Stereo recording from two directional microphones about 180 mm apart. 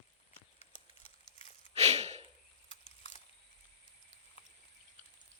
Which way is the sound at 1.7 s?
35° right (ahead or behind).